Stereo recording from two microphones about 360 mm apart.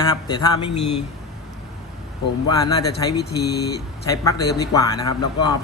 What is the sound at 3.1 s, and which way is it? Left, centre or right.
Speech, left.